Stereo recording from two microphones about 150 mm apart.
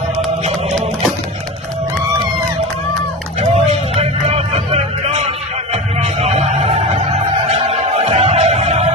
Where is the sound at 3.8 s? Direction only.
40° right (ahead or behind).